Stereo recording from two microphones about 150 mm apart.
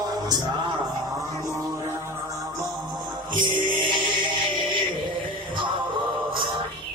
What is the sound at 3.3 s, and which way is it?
Music, 35° right (ahead or behind).